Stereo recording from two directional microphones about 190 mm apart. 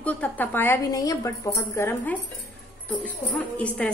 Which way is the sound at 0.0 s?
10° left (ahead or behind).